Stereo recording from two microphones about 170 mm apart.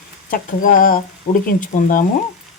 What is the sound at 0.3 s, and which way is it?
Speech, 55° left (ahead or behind).